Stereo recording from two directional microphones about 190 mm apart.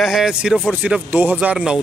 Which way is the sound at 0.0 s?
5° right (ahead or behind).